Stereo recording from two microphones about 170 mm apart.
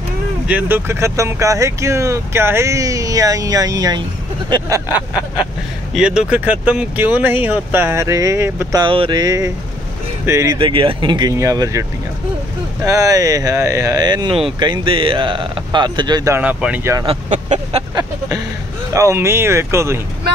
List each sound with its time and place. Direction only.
0.5 s speech: 10° right (ahead or behind)
5.9 s speech: 5° right (ahead or behind)
8.8 s speech: 30° right (ahead or behind)
12.8 s speech: 20° right (ahead or behind)
16.3 s speech: 10° right (ahead or behind)
17.3 s a sound: 45° right (ahead or behind)
18.9 s speech: 15° right (ahead or behind)